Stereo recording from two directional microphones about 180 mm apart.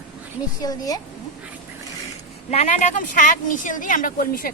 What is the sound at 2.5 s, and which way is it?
Speech, 40° left (ahead or behind).